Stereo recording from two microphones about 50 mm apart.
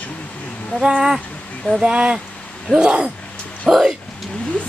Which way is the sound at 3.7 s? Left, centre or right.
Centre.